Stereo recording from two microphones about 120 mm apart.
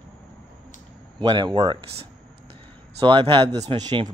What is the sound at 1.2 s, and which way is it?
Speech, 35° right (ahead or behind).